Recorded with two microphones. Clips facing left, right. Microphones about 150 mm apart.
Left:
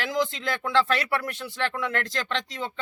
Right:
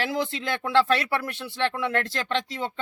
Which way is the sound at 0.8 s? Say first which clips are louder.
Right 2 dB; 25° right (ahead or behind).